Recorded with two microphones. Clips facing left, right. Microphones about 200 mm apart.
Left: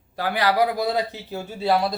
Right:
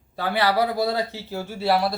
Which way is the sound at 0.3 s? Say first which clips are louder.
Even; 15° left (ahead or behind).